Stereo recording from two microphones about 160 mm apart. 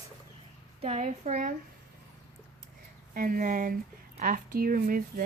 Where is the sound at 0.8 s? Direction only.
45° right (ahead or behind).